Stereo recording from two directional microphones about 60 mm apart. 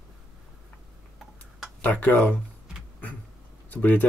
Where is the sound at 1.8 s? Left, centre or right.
Left.